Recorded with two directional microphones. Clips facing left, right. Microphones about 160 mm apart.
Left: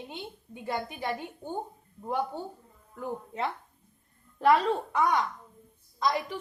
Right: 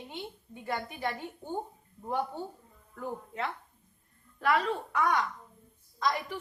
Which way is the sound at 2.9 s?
25° left (ahead or behind).